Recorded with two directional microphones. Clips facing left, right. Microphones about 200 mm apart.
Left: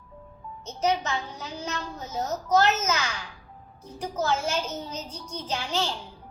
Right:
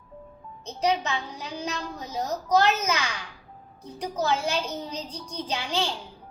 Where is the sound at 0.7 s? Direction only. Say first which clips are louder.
Even; 15° right (ahead or behind).